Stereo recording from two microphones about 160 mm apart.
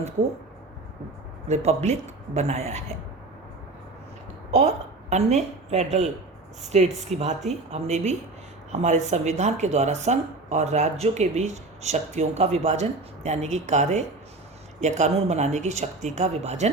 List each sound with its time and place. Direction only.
1.5 s speech: 45° right (ahead or behind)
4.5 s a woman's voice: 45° right (ahead or behind)